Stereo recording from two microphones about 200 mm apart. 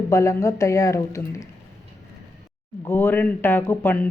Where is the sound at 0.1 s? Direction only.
15° left (ahead or behind).